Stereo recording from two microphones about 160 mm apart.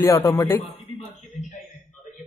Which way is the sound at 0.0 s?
20° left (ahead or behind).